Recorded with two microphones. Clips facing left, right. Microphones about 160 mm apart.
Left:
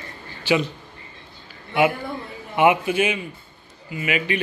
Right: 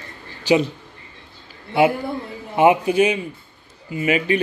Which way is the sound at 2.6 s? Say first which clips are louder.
Right 3 dB; 35° right (ahead or behind).